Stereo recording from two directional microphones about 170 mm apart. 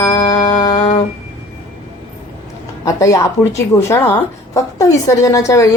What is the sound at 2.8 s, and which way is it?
Speech, 20° left (ahead or behind).